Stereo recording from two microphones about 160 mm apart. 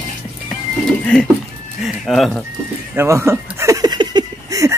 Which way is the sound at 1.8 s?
Centre (ahead or behind).